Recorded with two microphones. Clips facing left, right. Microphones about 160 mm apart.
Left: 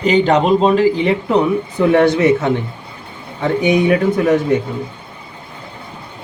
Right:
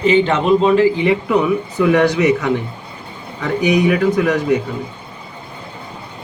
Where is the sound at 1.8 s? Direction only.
30° left (ahead or behind).